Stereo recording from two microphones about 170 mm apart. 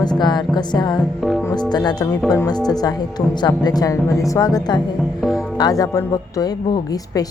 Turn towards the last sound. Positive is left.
turn(degrees=20)  # may be behind; listen again after turning